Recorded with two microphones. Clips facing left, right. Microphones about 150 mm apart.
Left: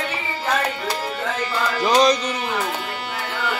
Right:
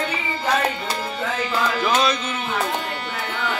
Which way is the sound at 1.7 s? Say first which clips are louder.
Left 6 dB; 35° left (ahead or behind).